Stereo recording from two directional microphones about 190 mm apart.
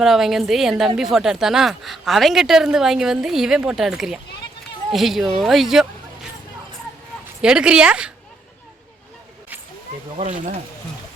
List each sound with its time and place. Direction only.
0.0 s speech: centre (ahead or behind)
7.4 s speech: 5° right (ahead or behind)